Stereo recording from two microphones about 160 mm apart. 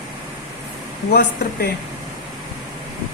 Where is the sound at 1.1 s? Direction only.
90° left.